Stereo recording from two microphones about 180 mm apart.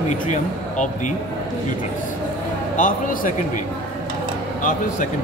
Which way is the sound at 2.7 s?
50° left (ahead or behind).